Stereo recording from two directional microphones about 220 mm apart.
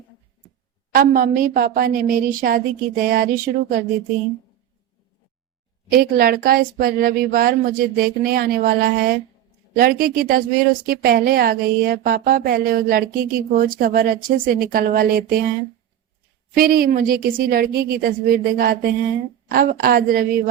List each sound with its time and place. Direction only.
0.9 s speech: 40° right (ahead or behind)
5.9 s speech: 40° right (ahead or behind)
16.6 s a woman's voice: 40° right (ahead or behind)